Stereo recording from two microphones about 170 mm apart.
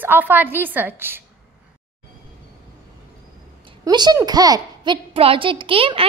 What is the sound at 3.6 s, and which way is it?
A child's voice, 25° right (ahead or behind).